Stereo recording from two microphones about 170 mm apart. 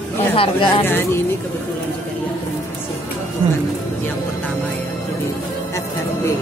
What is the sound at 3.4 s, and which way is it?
Speech, 30° right (ahead or behind).